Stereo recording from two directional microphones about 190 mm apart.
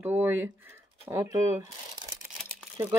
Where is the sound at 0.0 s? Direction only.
10° right (ahead or behind).